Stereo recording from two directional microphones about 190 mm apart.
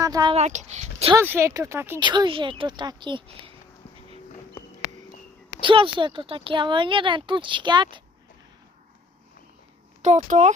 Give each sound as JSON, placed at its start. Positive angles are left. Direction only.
{"t": 0.0, "sound": "speech", "side_deg": -20}
{"t": 0.3, "sound": "speech", "side_deg": -35}
{"t": 1.1, "sound": "speech", "side_deg": -10}
{"t": 2.0, "sound": "speech", "side_deg": -25}
{"t": 5.5, "sound": "speech", "side_deg": -25}
{"t": 10.0, "sound": "speech", "side_deg": -35}